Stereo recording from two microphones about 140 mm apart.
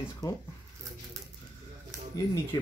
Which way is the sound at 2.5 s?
30° left (ahead or behind).